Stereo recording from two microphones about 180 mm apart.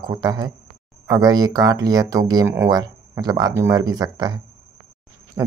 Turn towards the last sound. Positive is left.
turn(degrees=-15)  # may be behind; listen again after turning